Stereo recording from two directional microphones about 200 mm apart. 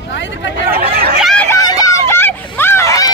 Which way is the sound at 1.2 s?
Centre (ahead or behind).